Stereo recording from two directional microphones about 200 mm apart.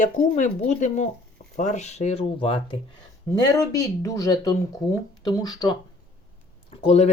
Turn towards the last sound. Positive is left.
turn(degrees=30)  # may be behind; listen again after turning